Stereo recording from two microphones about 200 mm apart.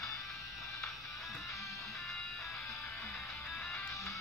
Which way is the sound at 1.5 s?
15° left (ahead or behind).